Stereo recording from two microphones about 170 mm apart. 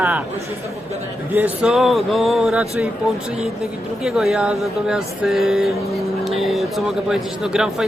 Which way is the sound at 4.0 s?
5° right (ahead or behind).